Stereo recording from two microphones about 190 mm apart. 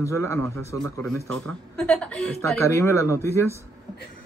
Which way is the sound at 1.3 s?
5° left (ahead or behind).